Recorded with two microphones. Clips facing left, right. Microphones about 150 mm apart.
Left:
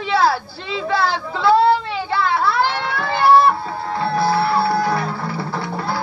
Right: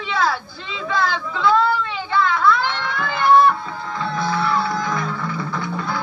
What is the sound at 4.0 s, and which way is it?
Music, 35° left (ahead or behind).